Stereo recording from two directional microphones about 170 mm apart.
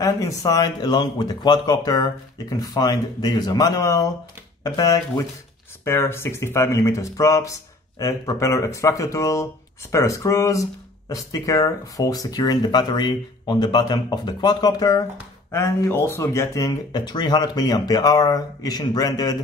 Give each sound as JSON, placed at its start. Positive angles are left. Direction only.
{"t": 0.0, "sound": "speech", "side_deg": 20}